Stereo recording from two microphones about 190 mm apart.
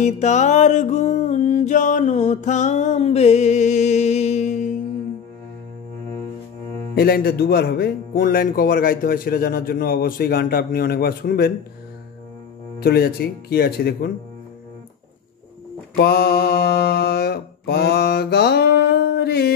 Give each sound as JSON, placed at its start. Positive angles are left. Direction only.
{"t": 0.0, "sound": "music", "side_deg": 40}
{"t": 7.0, "sound": "speech", "side_deg": 50}
{"t": 12.8, "sound": "mantra", "side_deg": 55}
{"t": 16.0, "sound": "mantra", "side_deg": 55}